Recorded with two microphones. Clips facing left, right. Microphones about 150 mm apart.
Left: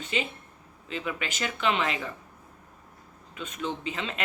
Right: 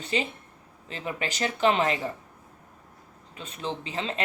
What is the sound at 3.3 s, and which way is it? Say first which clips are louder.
Speech: left 1 dB; 35° right (ahead or behind).